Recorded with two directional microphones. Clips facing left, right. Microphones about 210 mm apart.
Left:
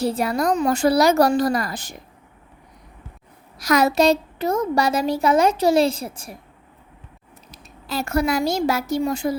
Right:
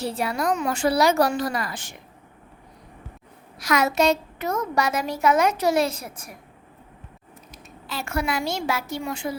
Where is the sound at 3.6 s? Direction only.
35° left (ahead or behind).